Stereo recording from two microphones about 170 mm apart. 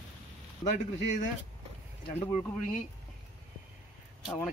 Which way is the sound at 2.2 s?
40° left (ahead or behind).